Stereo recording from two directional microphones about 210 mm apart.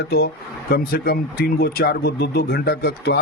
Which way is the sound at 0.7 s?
45° left (ahead or behind).